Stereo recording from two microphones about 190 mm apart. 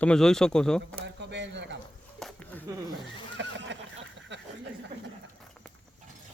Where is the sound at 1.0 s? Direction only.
65° right (ahead or behind).